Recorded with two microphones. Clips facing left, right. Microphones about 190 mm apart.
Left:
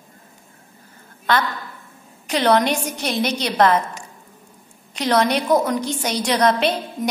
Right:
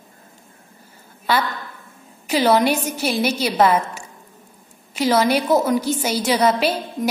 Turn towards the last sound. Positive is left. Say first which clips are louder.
# even
turn(degrees=-5)  # may be behind; listen again after turning